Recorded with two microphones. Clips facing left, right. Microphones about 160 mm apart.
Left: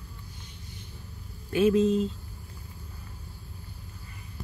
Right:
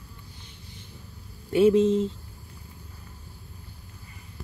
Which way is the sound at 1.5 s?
25° right (ahead or behind).